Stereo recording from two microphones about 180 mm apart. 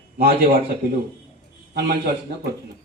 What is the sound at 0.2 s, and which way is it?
Speech, 60° right (ahead or behind).